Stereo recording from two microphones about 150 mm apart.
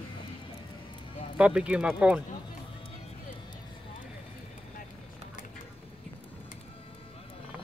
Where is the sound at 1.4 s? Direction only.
10° right (ahead or behind).